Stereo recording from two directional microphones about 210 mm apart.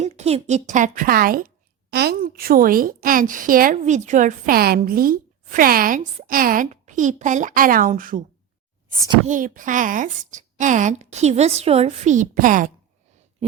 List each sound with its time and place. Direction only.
0.0 s speech: 30° right (ahead or behind)
9.2 s speech: 40° right (ahead or behind)